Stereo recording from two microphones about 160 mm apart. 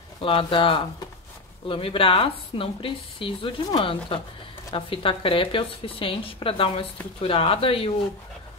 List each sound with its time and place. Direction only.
0.2 s speech: 35° left (ahead or behind)